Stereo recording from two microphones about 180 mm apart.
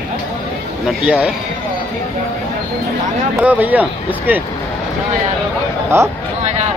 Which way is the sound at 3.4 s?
10° right (ahead or behind).